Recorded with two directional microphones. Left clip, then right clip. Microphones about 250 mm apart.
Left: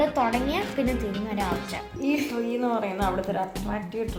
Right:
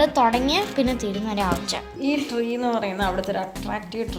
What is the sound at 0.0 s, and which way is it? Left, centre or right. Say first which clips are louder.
A woman's voice: right 5 dB; right.